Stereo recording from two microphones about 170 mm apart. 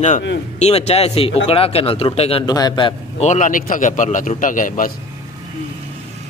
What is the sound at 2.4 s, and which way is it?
Speech, 25° left (ahead or behind).